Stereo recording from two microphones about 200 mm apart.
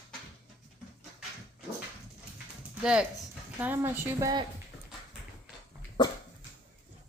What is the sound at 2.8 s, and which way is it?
A woman's voice, 5° right (ahead or behind).